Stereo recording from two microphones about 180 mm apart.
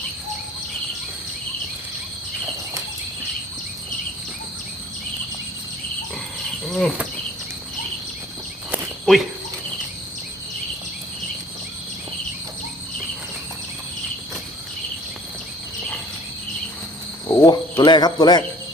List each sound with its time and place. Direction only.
6.7 s speech: centre (ahead or behind)
8.7 s cricket: centre (ahead or behind)
17.2 s cricket: 20° left (ahead or behind)